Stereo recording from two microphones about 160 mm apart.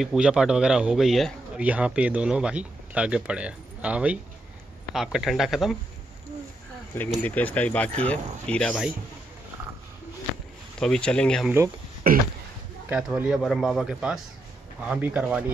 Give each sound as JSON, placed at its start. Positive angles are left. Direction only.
{"t": 0.0, "sound": "a man's voice", "side_deg": -5}
{"t": 7.2, "sound": "speech", "side_deg": 10}
{"t": 10.8, "sound": "a man's voice", "side_deg": 5}
{"t": 12.1, "sound": "throat clearing", "side_deg": -60}
{"t": 12.9, "sound": "a man's voice", "side_deg": -5}